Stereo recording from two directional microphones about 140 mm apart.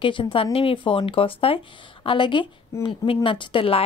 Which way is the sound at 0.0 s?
40° left (ahead or behind).